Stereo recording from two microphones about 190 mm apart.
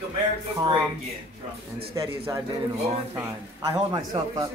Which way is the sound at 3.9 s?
20° right (ahead or behind).